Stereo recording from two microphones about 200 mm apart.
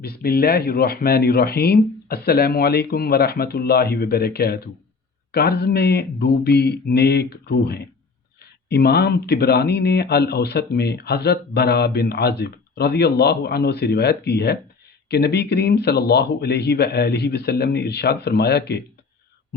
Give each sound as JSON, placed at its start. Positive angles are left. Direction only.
{"t": 0.0, "sound": "speech", "side_deg": 50}